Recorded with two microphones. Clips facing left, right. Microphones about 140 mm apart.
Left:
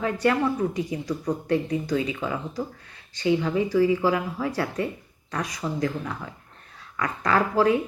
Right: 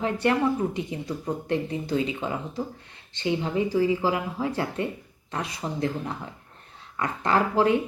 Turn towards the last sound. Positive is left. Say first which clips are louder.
# left 1 dB
turn(degrees=-25)  # may be behind; listen again after turning